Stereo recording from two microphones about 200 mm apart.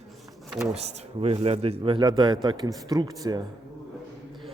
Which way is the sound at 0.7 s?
30° right (ahead or behind).